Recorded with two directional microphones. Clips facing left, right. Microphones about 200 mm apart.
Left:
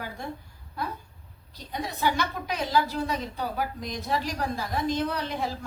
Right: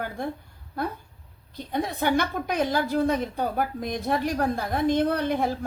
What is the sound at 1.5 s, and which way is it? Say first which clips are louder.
A woman's voice: right 6 dB; 55° right (ahead or behind).